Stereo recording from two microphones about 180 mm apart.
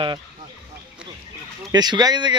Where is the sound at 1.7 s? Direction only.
20° right (ahead or behind).